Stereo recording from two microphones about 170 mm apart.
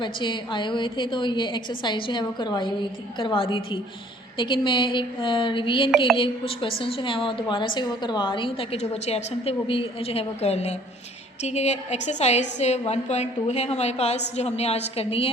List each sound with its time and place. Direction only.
0.0 s a woman's voice: 30° left (ahead or behind)